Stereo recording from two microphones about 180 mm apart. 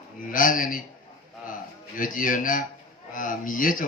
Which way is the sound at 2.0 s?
50° left (ahead or behind).